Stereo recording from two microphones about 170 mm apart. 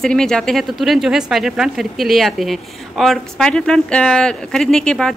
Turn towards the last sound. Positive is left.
turn(degrees=5)  # may be behind; listen again after turning